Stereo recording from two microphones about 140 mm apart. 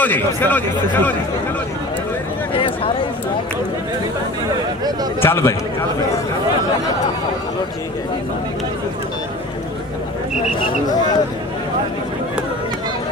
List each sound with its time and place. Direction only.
0.0 s speech: 10° left (ahead or behind)
2.5 s speech: 40° left (ahead or behind)
5.2 s speech: 15° left (ahead or behind)
10.6 s speech: 30° left (ahead or behind)